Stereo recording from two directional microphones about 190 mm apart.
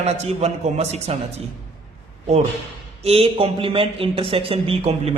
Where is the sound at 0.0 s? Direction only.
35° right (ahead or behind).